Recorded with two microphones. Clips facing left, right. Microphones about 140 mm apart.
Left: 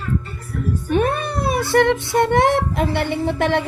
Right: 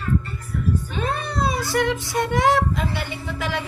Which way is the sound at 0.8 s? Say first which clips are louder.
Left 7 dB; 60° left (ahead or behind).